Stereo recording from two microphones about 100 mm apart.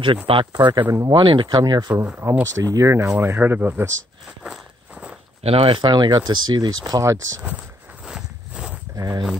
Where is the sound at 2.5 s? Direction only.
35° right (ahead or behind).